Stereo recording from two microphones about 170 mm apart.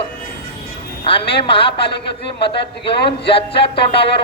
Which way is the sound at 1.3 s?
30° left (ahead or behind).